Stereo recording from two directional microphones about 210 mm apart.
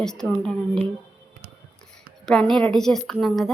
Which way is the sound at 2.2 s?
Centre (ahead or behind).